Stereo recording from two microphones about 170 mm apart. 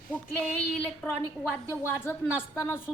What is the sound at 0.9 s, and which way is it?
A woman's voice, 10° left (ahead or behind).